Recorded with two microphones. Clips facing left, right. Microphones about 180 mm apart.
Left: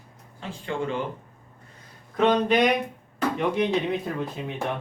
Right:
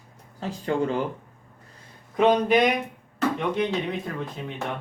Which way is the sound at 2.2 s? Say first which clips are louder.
Right 1 dB; 10° right (ahead or behind).